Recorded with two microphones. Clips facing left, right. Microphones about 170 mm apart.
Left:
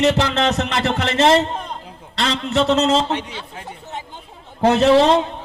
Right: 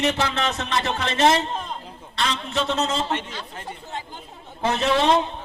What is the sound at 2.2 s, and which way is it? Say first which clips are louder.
Speech: left 6 dB; 90° left.